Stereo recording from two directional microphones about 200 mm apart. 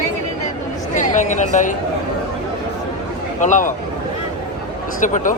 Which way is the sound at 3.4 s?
40° left (ahead or behind).